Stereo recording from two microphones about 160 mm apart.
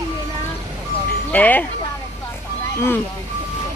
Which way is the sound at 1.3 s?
10° left (ahead or behind).